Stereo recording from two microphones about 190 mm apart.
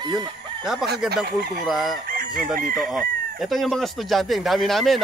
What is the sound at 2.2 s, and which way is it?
Chicken, 45° right (ahead or behind).